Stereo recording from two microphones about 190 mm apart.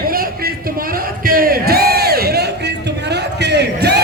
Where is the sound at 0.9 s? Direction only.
50° right (ahead or behind).